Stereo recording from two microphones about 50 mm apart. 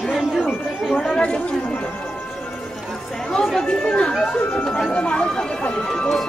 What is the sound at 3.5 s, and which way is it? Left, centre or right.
Chatter, centre.